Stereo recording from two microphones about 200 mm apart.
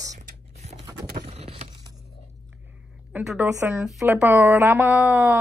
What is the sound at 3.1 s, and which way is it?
A woman's voice, 10° right (ahead or behind).